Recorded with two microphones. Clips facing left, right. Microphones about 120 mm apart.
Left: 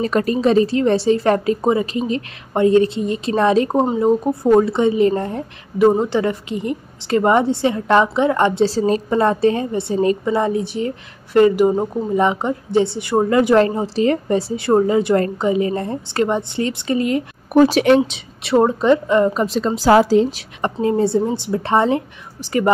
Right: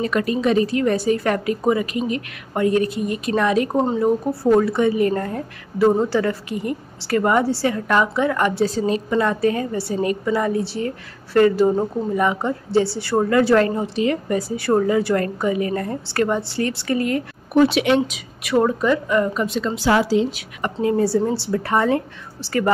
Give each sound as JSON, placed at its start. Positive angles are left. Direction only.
{"t": 0.0, "sound": "a woman's voice", "side_deg": 35}
{"t": 8.7, "sound": "a woman's voice", "side_deg": 35}
{"t": 14.5, "sound": "a woman's voice", "side_deg": 25}
{"t": 17.6, "sound": "a woman's voice", "side_deg": 40}
{"t": 20.6, "sound": "a woman's voice", "side_deg": 30}